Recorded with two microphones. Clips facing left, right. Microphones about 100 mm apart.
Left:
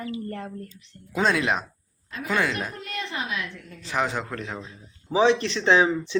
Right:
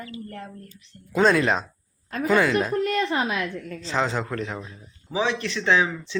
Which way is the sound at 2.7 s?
50° right (ahead or behind).